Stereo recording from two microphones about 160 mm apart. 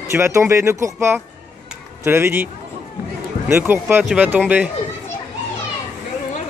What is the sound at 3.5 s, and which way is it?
Speech, 15° right (ahead or behind).